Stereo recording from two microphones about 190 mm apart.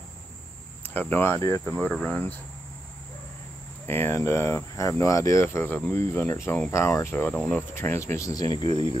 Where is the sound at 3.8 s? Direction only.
10° left (ahead or behind).